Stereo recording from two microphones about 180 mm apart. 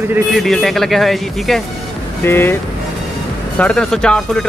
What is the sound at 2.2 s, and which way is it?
Speech, 10° left (ahead or behind).